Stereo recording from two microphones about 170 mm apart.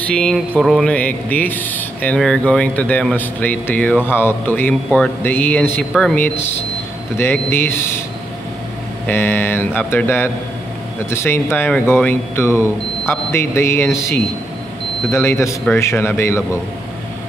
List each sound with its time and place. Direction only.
0.0 s speech: 5° left (ahead or behind)
9.0 s speech: 10° left (ahead or behind)